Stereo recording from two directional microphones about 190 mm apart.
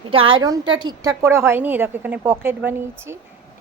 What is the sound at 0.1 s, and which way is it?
A woman's voice, 30° right (ahead or behind).